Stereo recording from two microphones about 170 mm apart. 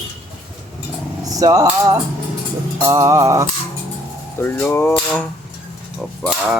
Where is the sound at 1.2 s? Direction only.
20° right (ahead or behind).